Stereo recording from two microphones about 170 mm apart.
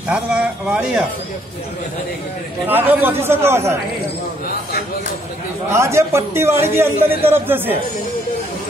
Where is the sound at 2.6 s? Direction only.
10° right (ahead or behind).